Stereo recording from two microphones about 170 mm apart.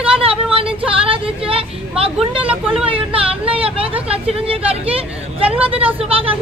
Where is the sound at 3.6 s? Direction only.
35° right (ahead or behind).